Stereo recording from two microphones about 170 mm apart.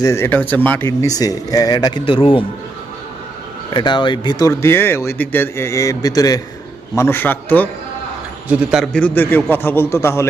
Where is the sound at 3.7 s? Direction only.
30° left (ahead or behind); by 7.7 s 10° left (ahead or behind).